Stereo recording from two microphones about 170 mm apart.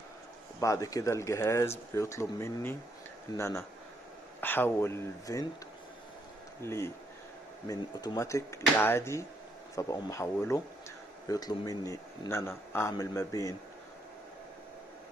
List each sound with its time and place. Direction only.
0.6 s speech: 20° left (ahead or behind)
6.6 s speech: 15° left (ahead or behind)